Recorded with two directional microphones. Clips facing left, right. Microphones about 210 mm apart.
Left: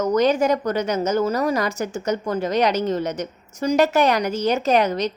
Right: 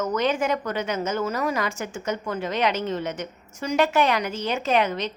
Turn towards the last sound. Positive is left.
turn(degrees=40)  # may be behind; listen again after turning